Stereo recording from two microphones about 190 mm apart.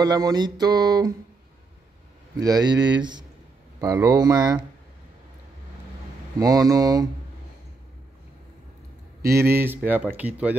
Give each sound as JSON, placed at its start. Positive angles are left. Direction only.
{"t": 0.0, "sound": "music", "side_deg": -20}
{"t": 2.4, "sound": "music", "side_deg": -20}
{"t": 3.8, "sound": "speech", "side_deg": -15}
{"t": 6.4, "sound": "music", "side_deg": -20}
{"t": 9.2, "sound": "speech", "side_deg": -15}